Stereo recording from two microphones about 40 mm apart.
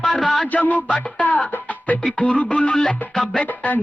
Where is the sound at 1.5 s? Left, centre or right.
Left.